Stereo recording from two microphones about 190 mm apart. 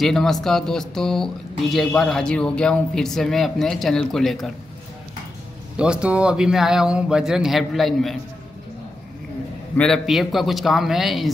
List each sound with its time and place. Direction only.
0.0 s speech: centre (ahead or behind)
5.8 s speech: 5° right (ahead or behind)
9.8 s speech: centre (ahead or behind)